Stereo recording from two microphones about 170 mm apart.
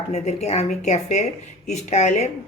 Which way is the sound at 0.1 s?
40° left (ahead or behind).